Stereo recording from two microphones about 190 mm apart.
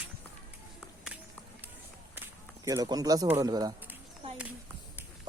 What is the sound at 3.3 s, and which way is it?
Speech, 20° right (ahead or behind).